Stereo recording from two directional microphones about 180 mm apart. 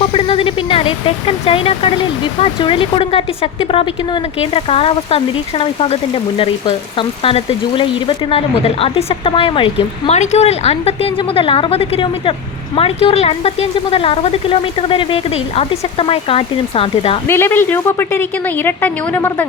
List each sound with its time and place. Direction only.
0.0 s speech: 30° left (ahead or behind)
17.2 s a woman's voice: 15° left (ahead or behind)